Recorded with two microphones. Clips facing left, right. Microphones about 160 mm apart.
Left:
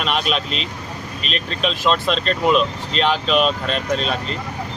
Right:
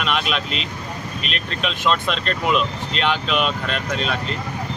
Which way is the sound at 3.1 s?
35° left (ahead or behind).